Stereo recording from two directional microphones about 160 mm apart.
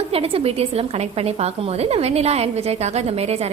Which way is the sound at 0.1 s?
35° right (ahead or behind).